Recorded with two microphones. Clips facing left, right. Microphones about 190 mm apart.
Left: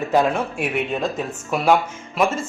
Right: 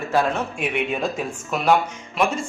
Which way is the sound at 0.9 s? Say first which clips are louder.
Left 1 dB; centre (ahead or behind).